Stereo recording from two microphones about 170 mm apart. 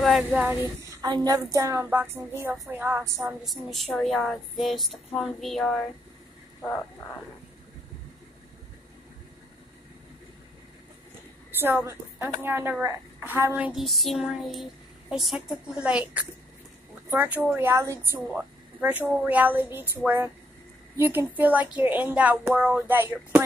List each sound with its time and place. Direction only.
0.0 s a woman's voice: 5° right (ahead or behind)
1.0 s a woman's voice: 20° right (ahead or behind)
3.4 s speech: centre (ahead or behind)
11.5 s a woman's voice: 15° right (ahead or behind)